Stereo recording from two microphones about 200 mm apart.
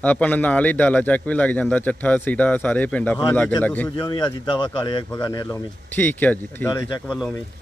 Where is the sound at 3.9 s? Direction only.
25° left (ahead or behind).